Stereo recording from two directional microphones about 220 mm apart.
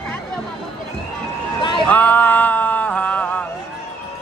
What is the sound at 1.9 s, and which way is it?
Music, 5° left (ahead or behind).